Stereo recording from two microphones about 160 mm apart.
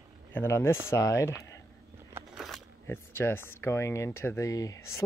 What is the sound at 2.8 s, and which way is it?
Speech, 15° left (ahead or behind).